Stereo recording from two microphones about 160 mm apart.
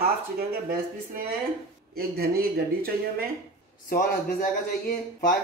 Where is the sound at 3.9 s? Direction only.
55° left (ahead or behind).